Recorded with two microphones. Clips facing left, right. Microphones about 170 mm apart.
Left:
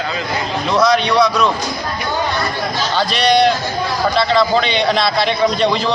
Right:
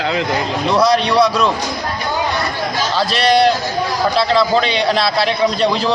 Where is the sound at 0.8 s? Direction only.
35° right (ahead or behind).